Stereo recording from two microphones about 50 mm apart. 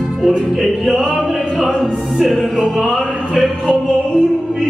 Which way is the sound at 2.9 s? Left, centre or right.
Centre.